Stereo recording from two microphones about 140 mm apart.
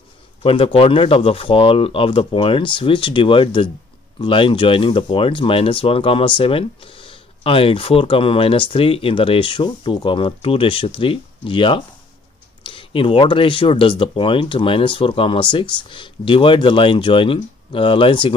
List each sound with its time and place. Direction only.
0.4 s speech: 40° left (ahead or behind)